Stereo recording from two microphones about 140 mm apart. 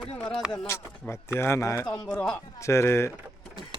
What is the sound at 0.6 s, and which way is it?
Speech, 15° left (ahead or behind).